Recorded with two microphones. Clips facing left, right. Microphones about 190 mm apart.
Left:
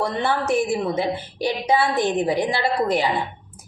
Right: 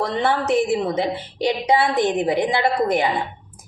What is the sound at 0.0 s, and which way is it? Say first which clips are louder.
A woman's voice: right 2 dB; 65° right (ahead or behind).